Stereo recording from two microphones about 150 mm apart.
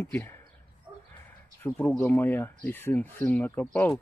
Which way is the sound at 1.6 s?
10° left (ahead or behind).